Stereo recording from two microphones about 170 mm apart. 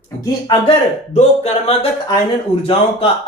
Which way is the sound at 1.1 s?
40° left (ahead or behind).